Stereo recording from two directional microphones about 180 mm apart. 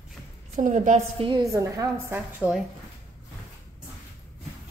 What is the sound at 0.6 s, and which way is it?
Speech, 45° right (ahead or behind).